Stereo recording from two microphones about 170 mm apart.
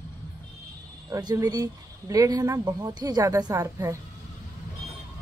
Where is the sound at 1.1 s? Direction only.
20° right (ahead or behind).